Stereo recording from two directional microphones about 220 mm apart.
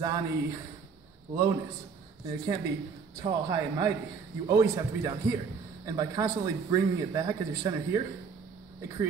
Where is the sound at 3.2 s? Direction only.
20° right (ahead or behind).